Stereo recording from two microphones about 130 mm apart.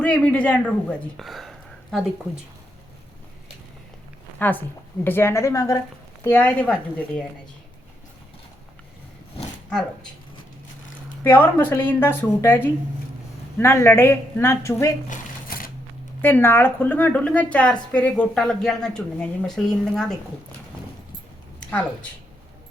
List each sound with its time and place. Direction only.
0.0 s speech: 10° left (ahead or behind)
4.4 s a woman's voice: 15° left (ahead or behind)
11.2 s a woman's voice: 15° left (ahead or behind)
15.1 s crumpling: 90° left
16.2 s a woman's voice: 15° left (ahead or behind)
21.6 s a sound: 10° left (ahead or behind)